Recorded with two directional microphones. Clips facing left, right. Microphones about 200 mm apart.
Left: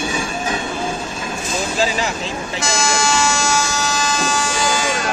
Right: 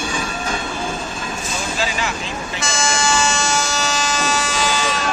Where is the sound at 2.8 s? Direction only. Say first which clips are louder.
Even; 60° left (ahead or behind).